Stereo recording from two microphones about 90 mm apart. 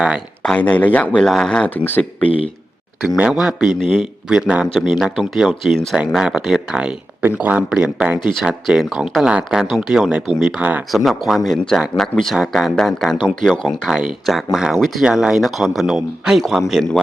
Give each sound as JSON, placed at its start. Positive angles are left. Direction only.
{"t": 0.4, "sound": "speech", "side_deg": 15}
{"t": 3.2, "sound": "speech", "side_deg": -10}
{"t": 4.6, "sound": "speech", "side_deg": 0}
{"t": 13.9, "sound": "speech", "side_deg": -5}